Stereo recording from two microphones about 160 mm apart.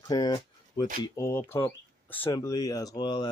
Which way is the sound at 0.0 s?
25° left (ahead or behind).